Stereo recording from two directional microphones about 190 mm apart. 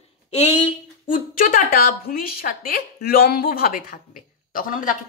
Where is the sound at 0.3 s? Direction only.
35° left (ahead or behind).